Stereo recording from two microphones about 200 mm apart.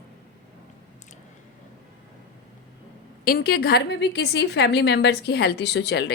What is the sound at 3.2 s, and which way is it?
A woman's voice, 50° left (ahead or behind).